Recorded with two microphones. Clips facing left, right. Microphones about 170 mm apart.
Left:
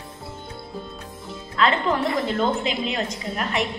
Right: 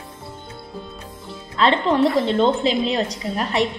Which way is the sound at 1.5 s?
30° right (ahead or behind).